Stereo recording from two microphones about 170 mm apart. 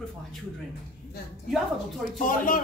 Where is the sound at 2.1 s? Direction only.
55° left (ahead or behind).